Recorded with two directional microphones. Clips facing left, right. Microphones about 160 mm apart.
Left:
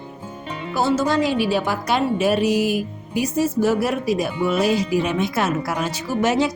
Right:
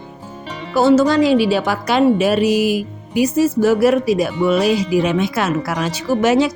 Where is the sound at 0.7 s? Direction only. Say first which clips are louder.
Right 7 dB; 80° right.